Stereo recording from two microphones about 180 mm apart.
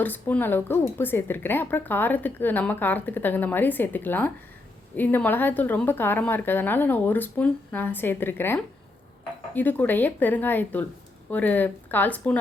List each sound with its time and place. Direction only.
0.0 s a woman's voice: 10° left (ahead or behind)